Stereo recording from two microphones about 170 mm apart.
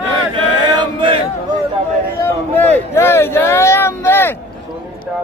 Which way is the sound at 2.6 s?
10° left (ahead or behind).